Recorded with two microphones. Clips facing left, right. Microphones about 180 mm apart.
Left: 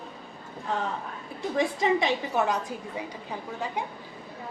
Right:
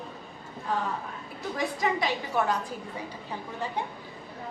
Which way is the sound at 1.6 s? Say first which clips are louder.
Left 4 dB; 25° left (ahead or behind).